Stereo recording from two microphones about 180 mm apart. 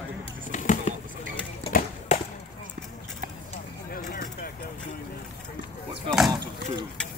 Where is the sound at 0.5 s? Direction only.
45° left (ahead or behind).